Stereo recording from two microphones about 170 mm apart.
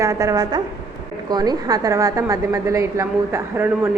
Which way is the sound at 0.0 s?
20° right (ahead or behind).